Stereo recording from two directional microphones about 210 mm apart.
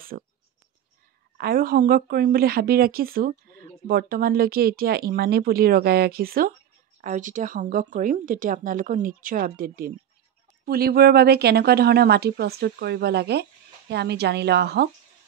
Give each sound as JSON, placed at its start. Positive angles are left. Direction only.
{"t": 0.1, "sound": "a woman's voice", "side_deg": -40}
{"t": 1.4, "sound": "a woman's voice", "side_deg": -45}